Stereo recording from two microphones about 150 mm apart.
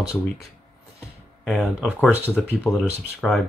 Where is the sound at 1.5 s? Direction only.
5° left (ahead or behind).